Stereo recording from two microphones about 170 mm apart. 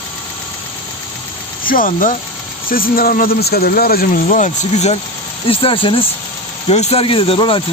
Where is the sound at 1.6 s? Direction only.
55° left (ahead or behind).